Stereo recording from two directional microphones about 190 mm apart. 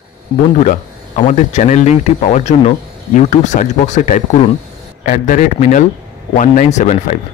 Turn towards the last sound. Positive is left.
turn(degrees=40)  # may be behind; listen again after turning